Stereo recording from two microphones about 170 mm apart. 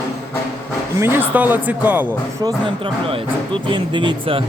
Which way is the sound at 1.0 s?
10° right (ahead or behind).